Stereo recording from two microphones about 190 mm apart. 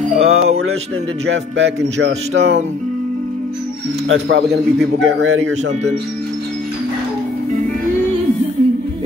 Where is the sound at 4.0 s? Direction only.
80° right; by 4.6 s 65° right (ahead or behind).